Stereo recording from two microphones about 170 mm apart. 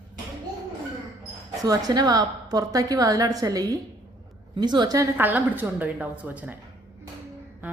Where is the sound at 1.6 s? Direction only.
20° right (ahead or behind).